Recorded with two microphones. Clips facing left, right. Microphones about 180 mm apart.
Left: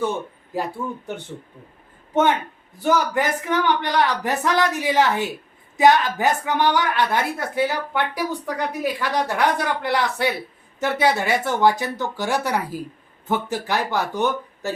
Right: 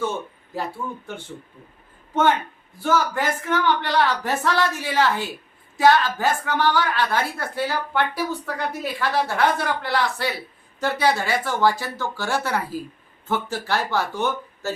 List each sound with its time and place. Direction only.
0.5 s speech: 15° left (ahead or behind)
2.8 s speech: 15° left (ahead or behind)